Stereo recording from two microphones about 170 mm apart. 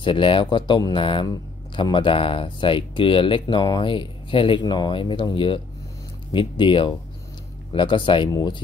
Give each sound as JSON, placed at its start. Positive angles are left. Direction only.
{"t": 0.0, "sound": "speech", "side_deg": 30}